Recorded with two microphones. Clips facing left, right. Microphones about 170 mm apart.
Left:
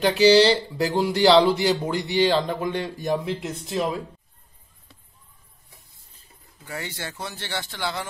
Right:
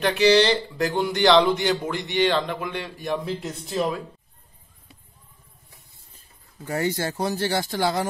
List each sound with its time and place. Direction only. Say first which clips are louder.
0.1 s speech: left 2 dB; 30° left (ahead or behind)
3.4 s speech: even; centre (ahead or behind)
6.7 s speech: right 9 dB; 45° right (ahead or behind)